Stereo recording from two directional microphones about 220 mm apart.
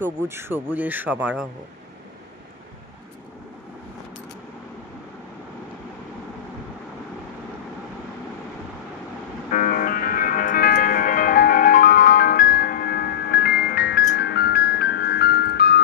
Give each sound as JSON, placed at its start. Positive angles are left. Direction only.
{"t": 0.0, "sound": "speech", "side_deg": -10}
{"t": 9.5, "sound": "music", "side_deg": 40}